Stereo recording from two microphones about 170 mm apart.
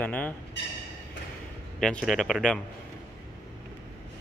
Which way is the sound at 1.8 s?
Centre (ahead or behind).